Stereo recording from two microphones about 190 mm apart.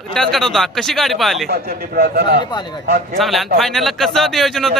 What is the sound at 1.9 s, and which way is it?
Speech, 55° right (ahead or behind).